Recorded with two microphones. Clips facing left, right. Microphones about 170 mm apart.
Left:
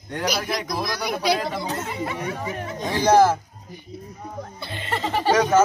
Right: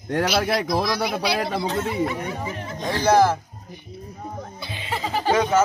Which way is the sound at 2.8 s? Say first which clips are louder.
Left 1 dB; 15° left (ahead or behind).